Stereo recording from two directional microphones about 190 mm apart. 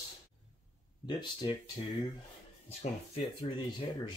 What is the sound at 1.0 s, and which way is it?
Speech, 25° left (ahead or behind).